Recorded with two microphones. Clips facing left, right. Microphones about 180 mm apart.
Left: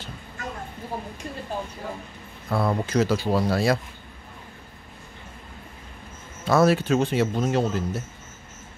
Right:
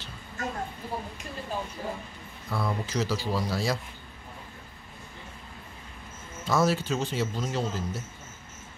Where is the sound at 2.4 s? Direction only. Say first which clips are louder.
Left 7 dB; 55° left (ahead or behind).